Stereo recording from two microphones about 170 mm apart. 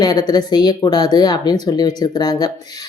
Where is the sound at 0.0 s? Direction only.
20° left (ahead or behind).